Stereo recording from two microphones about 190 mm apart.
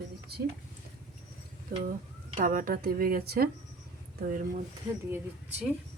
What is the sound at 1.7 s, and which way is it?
Speech, 55° right (ahead or behind).